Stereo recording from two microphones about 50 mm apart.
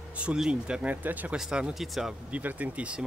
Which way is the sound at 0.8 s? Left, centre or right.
Right.